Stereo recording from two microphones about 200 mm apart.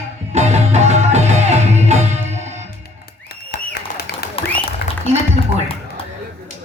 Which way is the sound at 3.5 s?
50° left (ahead or behind).